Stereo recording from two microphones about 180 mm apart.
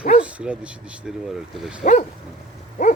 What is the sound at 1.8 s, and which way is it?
Dog, 45° left (ahead or behind).